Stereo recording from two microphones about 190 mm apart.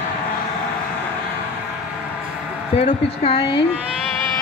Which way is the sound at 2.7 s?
35° left (ahead or behind).